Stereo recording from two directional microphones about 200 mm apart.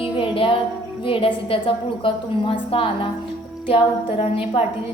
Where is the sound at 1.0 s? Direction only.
25° left (ahead or behind).